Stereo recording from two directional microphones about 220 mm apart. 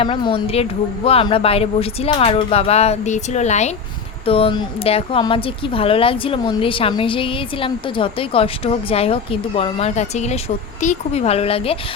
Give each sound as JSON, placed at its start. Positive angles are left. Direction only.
{"t": 0.0, "sound": "speech", "side_deg": 25}